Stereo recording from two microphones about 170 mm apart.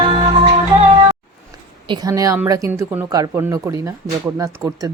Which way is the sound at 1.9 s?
20° right (ahead or behind).